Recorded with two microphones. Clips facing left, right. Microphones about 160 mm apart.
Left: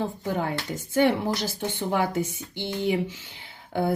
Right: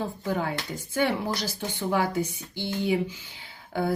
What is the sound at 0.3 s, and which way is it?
Speech, 50° left (ahead or behind).